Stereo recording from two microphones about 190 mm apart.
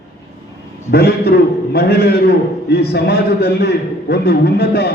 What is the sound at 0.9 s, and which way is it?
A man's voice, 55° left (ahead or behind).